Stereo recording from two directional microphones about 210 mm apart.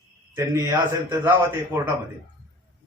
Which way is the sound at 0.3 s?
15° right (ahead or behind).